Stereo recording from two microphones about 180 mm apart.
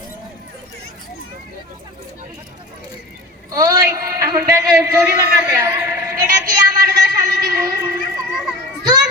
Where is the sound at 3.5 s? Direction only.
20° right (ahead or behind).